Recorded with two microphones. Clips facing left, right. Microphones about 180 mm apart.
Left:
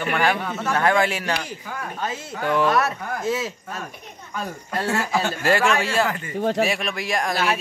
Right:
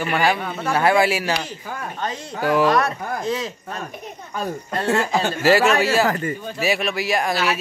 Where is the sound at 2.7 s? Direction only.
5° left (ahead or behind).